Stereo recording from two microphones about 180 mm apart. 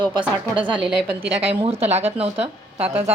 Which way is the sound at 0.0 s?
25° right (ahead or behind).